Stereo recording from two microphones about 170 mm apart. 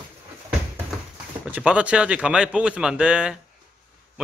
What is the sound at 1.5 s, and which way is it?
Speech, 10° right (ahead or behind).